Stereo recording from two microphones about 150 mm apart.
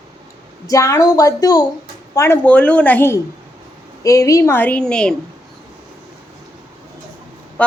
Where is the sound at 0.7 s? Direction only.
20° left (ahead or behind).